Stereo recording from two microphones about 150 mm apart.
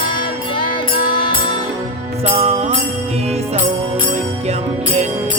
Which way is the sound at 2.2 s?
40° right (ahead or behind).